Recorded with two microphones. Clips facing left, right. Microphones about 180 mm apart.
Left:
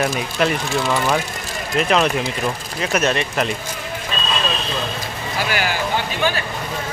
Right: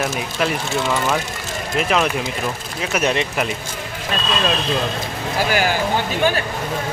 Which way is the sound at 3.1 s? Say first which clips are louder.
Even; 20° right (ahead or behind).